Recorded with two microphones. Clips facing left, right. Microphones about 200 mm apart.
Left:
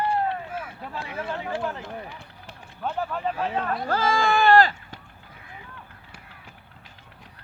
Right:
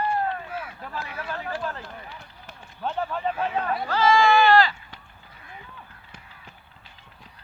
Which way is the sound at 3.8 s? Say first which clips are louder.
Right 5 dB; 50° left (ahead or behind).